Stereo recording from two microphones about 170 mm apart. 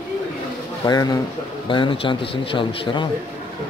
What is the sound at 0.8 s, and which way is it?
Speech, 25° left (ahead or behind).